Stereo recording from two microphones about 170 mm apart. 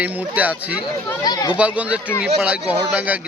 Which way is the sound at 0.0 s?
10° right (ahead or behind).